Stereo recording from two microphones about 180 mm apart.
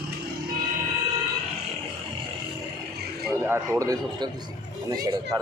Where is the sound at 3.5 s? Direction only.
20° right (ahead or behind).